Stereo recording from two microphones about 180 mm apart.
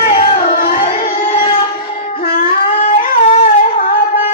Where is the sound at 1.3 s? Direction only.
30° left (ahead or behind).